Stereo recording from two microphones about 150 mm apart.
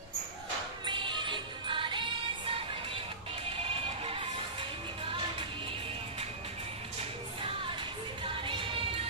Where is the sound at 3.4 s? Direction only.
40° right (ahead or behind).